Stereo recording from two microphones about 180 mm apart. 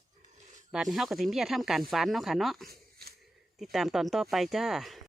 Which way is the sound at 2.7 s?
60° right (ahead or behind).